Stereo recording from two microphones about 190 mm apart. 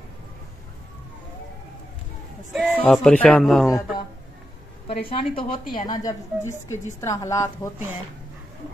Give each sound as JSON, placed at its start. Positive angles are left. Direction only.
{"t": 2.5, "sound": "speech", "side_deg": 0}
{"t": 4.8, "sound": "a woman's voice", "side_deg": 30}